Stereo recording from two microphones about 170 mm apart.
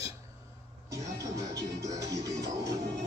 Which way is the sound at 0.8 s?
20° right (ahead or behind).